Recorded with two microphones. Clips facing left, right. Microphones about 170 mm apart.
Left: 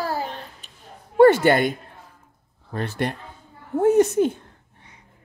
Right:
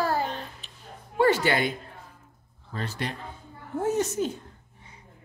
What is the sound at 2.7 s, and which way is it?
A woman's voice, 55° left (ahead or behind).